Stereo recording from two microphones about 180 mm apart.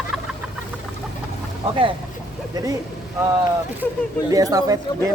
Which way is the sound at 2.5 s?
20° right (ahead or behind).